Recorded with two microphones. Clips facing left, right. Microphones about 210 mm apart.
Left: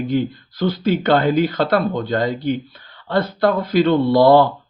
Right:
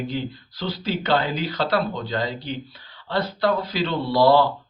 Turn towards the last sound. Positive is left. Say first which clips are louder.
# left 5 dB
turn(degrees=50)  # may be behind; listen again after turning